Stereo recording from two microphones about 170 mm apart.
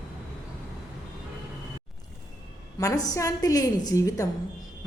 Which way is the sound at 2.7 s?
20° left (ahead or behind).